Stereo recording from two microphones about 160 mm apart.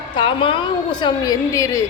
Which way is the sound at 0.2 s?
30° left (ahead or behind).